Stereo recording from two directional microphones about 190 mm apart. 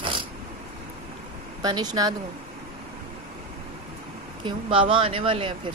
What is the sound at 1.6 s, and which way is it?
Speech, 20° right (ahead or behind).